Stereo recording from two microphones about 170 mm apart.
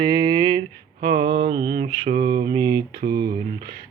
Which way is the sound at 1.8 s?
45° right (ahead or behind).